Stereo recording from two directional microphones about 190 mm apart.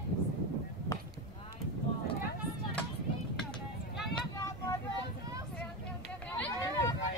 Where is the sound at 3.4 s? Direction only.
5° left (ahead or behind).